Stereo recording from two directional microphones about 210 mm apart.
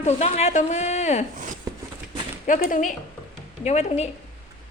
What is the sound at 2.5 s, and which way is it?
Speech, 40° left (ahead or behind).